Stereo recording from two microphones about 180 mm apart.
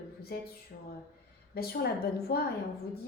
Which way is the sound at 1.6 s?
60° left (ahead or behind).